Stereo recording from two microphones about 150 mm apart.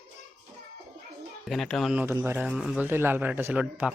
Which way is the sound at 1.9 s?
15° right (ahead or behind).